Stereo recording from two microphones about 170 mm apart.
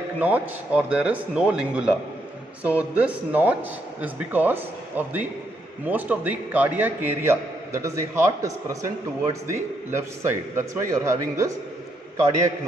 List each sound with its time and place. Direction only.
0.2 s a man's voice: 10° right (ahead or behind)